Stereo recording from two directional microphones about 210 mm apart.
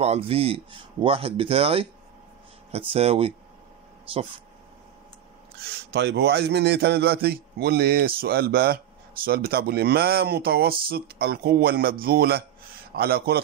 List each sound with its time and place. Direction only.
0.0 s speech: 30° right (ahead or behind)
2.9 s speech: 25° right (ahead or behind)
5.9 s a man's voice: 50° right (ahead or behind)